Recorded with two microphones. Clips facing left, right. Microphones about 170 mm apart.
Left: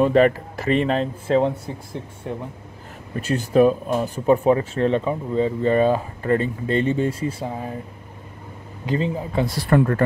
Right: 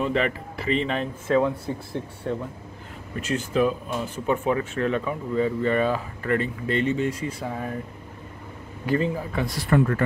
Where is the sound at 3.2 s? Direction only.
35° left (ahead or behind).